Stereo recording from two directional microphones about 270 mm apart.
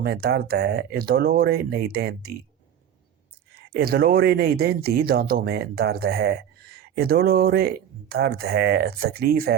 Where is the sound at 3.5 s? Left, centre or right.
Right.